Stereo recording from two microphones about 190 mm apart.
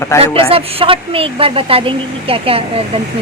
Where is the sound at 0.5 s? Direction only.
30° right (ahead or behind).